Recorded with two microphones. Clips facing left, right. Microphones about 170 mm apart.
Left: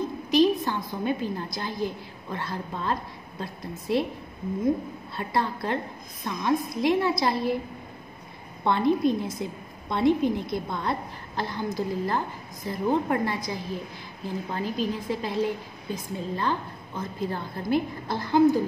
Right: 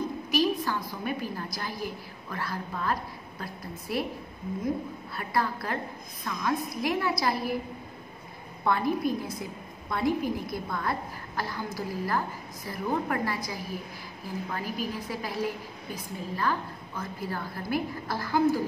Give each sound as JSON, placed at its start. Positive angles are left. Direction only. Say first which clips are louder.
{"t": 0.3, "sound": "a woman's voice", "louder": "left 6 dB", "side_deg": 25}
{"t": 5.1, "sound": "a woman's voice", "louder": "left 2 dB", "side_deg": 25}
{"t": 8.6, "sound": "a woman's voice", "louder": "left 4 dB", "side_deg": 25}